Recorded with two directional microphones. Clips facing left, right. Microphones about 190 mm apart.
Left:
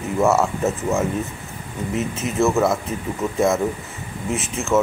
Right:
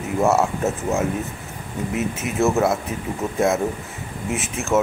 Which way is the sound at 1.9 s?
5° right (ahead or behind).